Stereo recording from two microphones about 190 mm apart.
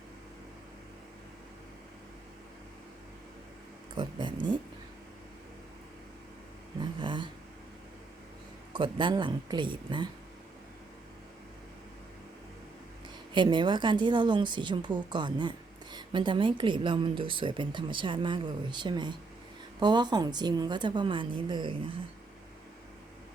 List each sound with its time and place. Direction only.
3.9 s a woman's voice: 25° right (ahead or behind)
6.7 s a sound: 25° right (ahead or behind)
8.7 s a woman's voice: 25° right (ahead or behind)
13.3 s a woman's voice: 25° right (ahead or behind)